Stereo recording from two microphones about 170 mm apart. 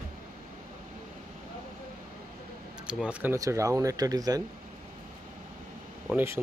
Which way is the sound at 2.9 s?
5° right (ahead or behind).